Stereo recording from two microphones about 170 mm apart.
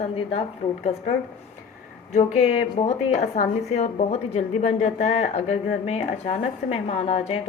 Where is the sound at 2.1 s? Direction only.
45° left (ahead or behind).